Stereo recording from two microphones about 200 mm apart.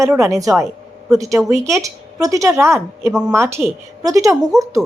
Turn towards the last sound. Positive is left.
turn(degrees=-15)  # may be behind; listen again after turning